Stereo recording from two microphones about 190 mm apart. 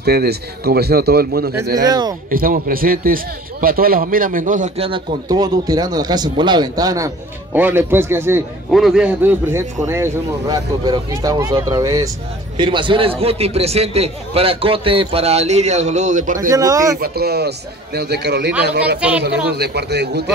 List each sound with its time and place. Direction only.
0.0 s a man's voice: 55° right (ahead or behind)
1.8 s a man's voice: 20° right (ahead or behind)
2.3 s a man's voice: 50° right (ahead or behind)
16.3 s a man's voice: 20° right (ahead or behind)
17.0 s a man's voice: 55° right (ahead or behind)
18.9 s a man's voice: 5° right (ahead or behind)
19.5 s a man's voice: 60° right (ahead or behind)